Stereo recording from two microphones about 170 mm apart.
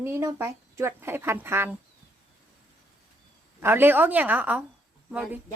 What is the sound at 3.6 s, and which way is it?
A woman's voice, 10° right (ahead or behind).